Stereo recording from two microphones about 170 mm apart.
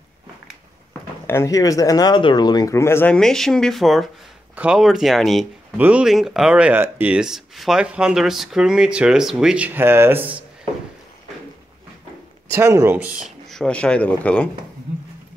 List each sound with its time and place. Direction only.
1.2 s speech: 15° left (ahead or behind); by 10.4 s 10° right (ahead or behind)
12.4 s speech: 15° right (ahead or behind); by 14.5 s 10° left (ahead or behind)